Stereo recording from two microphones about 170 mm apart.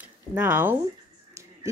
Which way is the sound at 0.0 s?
10° right (ahead or behind).